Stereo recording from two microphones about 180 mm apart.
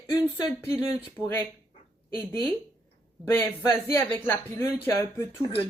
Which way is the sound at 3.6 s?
15° left (ahead or behind).